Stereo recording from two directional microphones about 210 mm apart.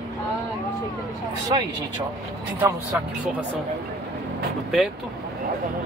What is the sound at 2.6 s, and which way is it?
Speech, 15° right (ahead or behind).